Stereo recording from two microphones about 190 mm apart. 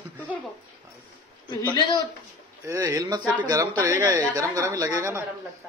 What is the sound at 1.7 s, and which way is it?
Speech, 25° left (ahead or behind).